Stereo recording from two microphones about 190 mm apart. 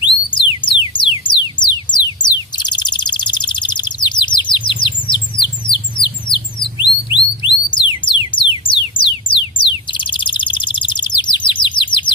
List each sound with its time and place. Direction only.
0.0 s music: 25° left (ahead or behind)
0.9 s a sound: 25° left (ahead or behind)
5.7 s bird: 25° left (ahead or behind)
7.4 s music: 25° left (ahead or behind)